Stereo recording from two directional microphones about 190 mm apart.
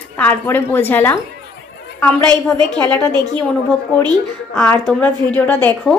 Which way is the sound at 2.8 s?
10° left (ahead or behind).